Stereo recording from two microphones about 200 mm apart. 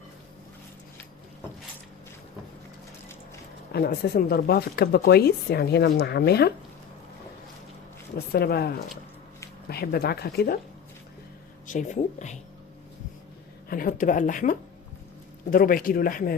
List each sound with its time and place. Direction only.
3.7 s speech: 50° left (ahead or behind)
8.3 s speech: 50° left (ahead or behind)
11.6 s speech: 40° left (ahead or behind)
13.7 s speech: 45° left (ahead or behind)